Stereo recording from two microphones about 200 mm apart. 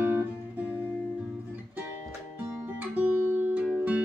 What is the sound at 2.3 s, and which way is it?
Music, 10° right (ahead or behind).